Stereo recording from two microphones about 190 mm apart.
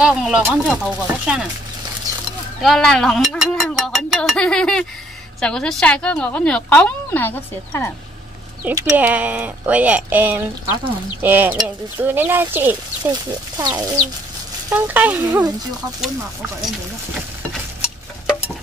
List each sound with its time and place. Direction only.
0.0 s speech: 5° right (ahead or behind)
2.6 s a woman's voice: centre (ahead or behind)
8.6 s speech: 10° right (ahead or behind)
13.0 s speech: 20° right (ahead or behind)
14.7 s speech: 10° right (ahead or behind)